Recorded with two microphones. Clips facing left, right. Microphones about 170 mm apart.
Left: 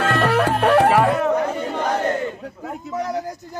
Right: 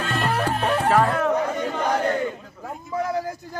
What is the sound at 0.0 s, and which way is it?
Music, 75° left (ahead or behind).